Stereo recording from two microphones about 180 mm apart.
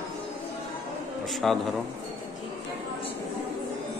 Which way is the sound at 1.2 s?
Centre (ahead or behind).